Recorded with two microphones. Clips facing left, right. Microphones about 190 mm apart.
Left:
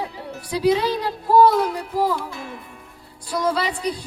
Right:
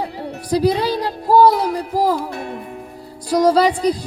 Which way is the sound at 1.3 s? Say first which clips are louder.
Right 2 dB; 40° right (ahead or behind).